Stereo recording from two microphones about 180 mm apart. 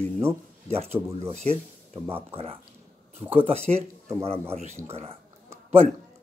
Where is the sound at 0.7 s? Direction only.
35° right (ahead or behind).